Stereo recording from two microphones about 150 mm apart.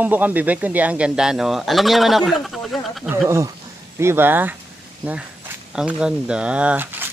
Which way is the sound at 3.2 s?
20° right (ahead or behind).